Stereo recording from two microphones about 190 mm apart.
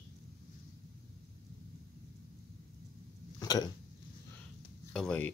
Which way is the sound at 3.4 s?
20° left (ahead or behind).